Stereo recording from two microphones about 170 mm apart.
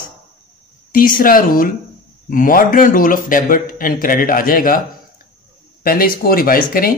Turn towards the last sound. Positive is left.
turn(degrees=60)  # may be behind; listen again after turning